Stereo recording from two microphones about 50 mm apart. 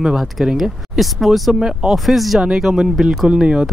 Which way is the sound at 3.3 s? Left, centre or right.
Centre.